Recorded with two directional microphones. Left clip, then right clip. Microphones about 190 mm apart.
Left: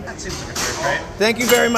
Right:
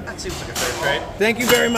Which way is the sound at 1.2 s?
5° right (ahead or behind).